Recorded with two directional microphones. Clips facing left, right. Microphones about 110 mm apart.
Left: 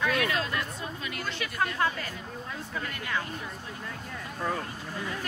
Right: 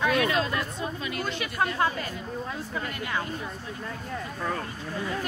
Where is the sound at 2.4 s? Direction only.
25° right (ahead or behind).